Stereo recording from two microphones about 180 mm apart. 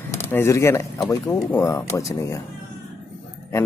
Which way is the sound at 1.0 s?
20° left (ahead or behind).